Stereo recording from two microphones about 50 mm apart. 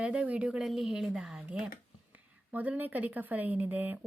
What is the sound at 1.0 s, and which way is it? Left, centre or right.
Speech, centre.